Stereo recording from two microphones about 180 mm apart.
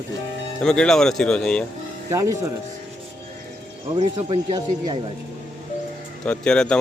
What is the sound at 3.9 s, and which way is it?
Speech, 35° right (ahead or behind).